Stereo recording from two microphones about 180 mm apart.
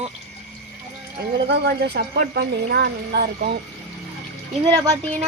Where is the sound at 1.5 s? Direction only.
65° right (ahead or behind).